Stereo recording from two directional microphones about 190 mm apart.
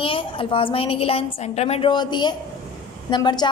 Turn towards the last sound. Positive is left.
turn(degrees=25)  # may be behind; listen again after turning